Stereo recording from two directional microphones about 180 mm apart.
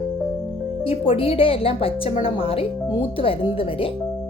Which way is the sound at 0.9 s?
30° left (ahead or behind).